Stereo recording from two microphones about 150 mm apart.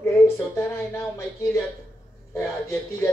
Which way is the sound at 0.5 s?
20° left (ahead or behind).